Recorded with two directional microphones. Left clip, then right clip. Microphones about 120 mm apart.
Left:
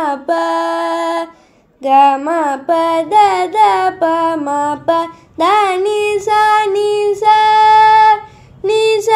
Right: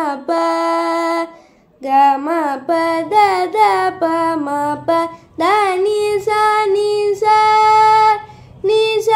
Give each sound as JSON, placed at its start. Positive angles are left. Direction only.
{"t": 0.0, "sound": "mantra", "side_deg": 25}
{"t": 1.8, "sound": "child singing", "side_deg": 35}
{"t": 8.6, "sound": "a sound", "side_deg": 40}